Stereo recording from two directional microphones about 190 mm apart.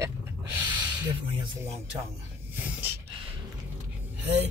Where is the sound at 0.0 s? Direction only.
10° right (ahead or behind).